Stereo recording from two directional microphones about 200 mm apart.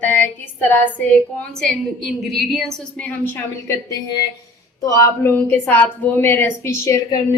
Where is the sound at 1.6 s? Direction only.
Centre (ahead or behind); by 7.2 s 15° left (ahead or behind).